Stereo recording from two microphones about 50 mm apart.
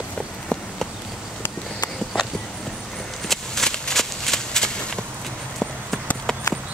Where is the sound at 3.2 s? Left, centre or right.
Centre.